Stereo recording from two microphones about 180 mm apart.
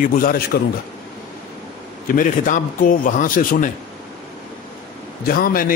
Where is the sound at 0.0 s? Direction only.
50° left (ahead or behind).